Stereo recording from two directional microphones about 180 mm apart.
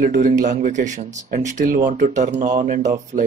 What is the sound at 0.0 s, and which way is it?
Speech, 50° right (ahead or behind).